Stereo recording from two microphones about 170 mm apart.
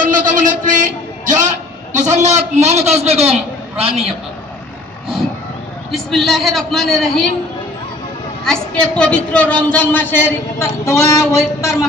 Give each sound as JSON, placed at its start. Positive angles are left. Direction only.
{"t": 0.0, "sound": "a sound", "side_deg": -50}
{"t": 5.9, "sound": "a man's voice", "side_deg": 0}
{"t": 8.5, "sound": "a woman's voice", "side_deg": 5}